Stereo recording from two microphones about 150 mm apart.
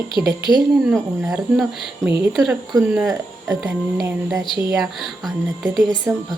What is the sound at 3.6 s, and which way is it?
A woman's voice, 10° right (ahead or behind).